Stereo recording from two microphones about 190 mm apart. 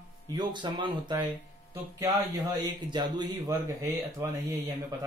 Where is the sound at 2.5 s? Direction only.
25° right (ahead or behind).